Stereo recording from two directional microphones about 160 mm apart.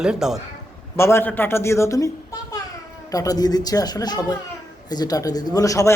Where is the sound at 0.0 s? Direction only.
5° right (ahead or behind).